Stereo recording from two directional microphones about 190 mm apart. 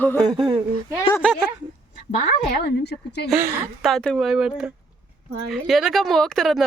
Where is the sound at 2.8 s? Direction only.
60° left (ahead or behind).